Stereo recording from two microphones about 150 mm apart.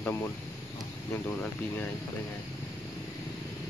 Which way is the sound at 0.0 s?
15° left (ahead or behind).